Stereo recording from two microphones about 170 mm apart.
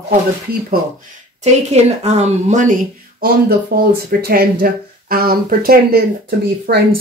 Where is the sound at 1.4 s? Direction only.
40° right (ahead or behind).